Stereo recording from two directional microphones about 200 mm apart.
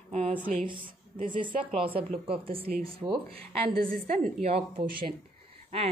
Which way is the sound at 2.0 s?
25° right (ahead or behind).